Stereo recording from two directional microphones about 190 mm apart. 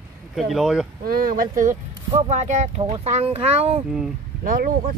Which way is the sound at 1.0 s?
50° right (ahead or behind).